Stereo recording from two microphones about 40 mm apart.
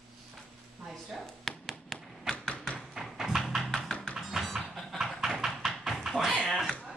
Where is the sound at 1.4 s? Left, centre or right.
Centre.